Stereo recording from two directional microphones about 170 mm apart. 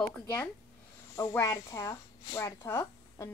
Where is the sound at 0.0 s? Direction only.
10° left (ahead or behind).